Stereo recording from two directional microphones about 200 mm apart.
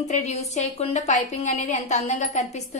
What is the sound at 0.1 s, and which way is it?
A woman's voice, 35° left (ahead or behind).